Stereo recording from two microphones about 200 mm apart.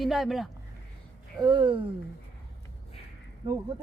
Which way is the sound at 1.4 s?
25° right (ahead or behind).